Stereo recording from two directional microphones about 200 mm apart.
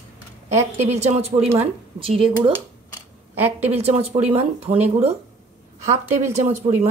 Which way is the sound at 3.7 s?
30° right (ahead or behind).